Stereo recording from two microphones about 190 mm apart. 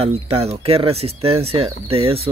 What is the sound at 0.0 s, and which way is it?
Speech, 30° right (ahead or behind).